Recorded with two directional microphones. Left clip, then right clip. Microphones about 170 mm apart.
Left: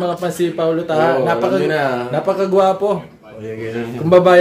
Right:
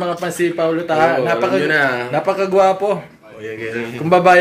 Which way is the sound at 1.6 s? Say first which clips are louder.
Right 1 dB; 20° left (ahead or behind).